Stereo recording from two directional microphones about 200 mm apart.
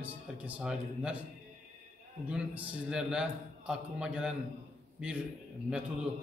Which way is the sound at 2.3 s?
5° right (ahead or behind).